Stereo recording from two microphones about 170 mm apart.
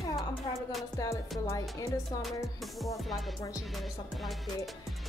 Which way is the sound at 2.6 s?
Centre (ahead or behind).